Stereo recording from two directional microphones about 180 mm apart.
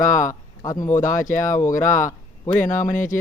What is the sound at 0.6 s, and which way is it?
Speech, 20° left (ahead or behind).